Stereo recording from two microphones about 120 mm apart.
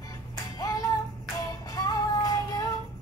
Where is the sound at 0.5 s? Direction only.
30° left (ahead or behind).